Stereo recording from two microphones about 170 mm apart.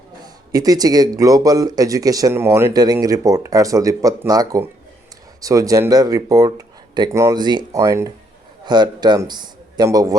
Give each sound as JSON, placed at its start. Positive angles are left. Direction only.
{"t": 0.5, "sound": "a man's voice", "side_deg": -20}